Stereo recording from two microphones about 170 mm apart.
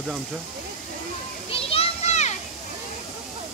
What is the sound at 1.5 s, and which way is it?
Children playing, 35° left (ahead or behind).